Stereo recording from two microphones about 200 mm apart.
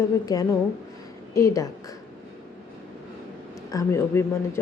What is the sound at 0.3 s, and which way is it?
Speech, 15° left (ahead or behind).